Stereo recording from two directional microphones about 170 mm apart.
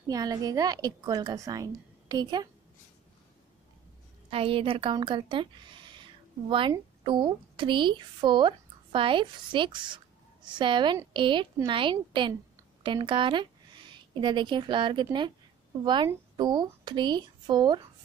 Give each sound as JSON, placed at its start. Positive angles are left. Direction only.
{"t": 0.1, "sound": "a woman's voice", "side_deg": -20}
{"t": 4.3, "sound": "a woman's voice", "side_deg": -35}